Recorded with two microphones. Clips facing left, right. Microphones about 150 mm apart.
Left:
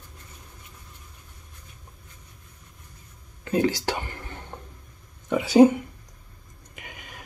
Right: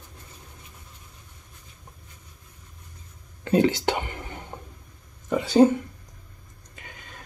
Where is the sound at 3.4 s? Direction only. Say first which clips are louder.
Right 3 dB; 25° right (ahead or behind).